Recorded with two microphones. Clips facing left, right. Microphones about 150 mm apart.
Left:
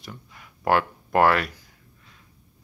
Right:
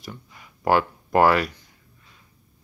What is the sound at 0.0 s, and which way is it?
Speech, centre (ahead or behind).